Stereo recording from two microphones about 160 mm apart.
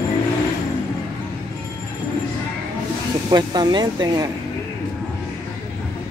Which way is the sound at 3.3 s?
25° right (ahead or behind).